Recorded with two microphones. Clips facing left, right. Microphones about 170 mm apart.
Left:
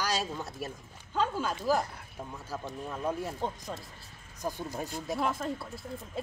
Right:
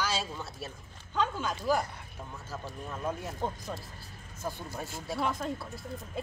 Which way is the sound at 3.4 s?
5° right (ahead or behind).